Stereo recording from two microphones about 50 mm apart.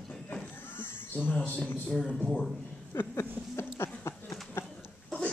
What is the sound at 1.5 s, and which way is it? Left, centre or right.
Speech, left.